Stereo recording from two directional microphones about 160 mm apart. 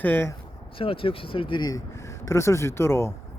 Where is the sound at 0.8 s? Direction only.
35° left (ahead or behind).